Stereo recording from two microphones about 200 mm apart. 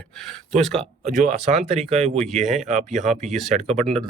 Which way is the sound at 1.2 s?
40° right (ahead or behind).